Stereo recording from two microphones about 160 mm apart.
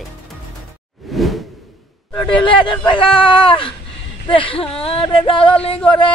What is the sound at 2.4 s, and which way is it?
Speech, 30° left (ahead or behind).